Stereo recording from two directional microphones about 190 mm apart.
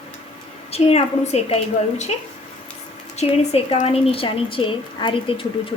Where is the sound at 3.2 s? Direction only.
35° left (ahead or behind).